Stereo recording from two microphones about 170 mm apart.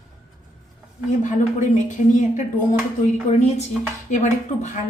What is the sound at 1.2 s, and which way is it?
A woman's voice, 45° left (ahead or behind).